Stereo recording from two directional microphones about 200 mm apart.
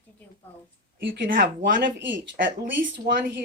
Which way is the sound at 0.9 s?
50° right (ahead or behind).